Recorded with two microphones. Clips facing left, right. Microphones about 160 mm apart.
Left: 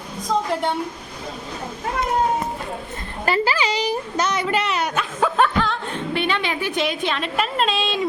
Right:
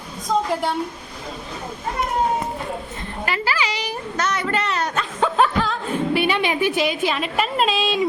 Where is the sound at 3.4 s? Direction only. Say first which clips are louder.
Left 3 dB; 25° left (ahead or behind).